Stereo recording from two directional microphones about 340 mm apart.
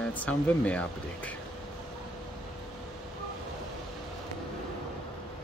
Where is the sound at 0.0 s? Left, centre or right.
Centre.